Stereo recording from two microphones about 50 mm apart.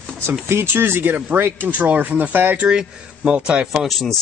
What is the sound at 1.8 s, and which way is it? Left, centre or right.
Speech, right.